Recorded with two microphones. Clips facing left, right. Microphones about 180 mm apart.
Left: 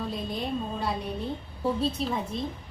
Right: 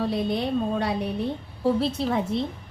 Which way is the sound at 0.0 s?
75° right (ahead or behind).